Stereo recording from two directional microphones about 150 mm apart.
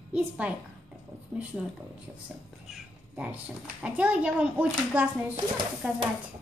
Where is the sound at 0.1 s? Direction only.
10° right (ahead or behind).